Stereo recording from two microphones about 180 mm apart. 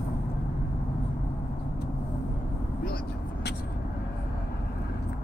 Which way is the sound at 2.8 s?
60° left (ahead or behind).